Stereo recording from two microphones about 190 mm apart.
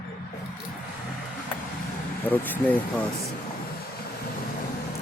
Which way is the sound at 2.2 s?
10° left (ahead or behind).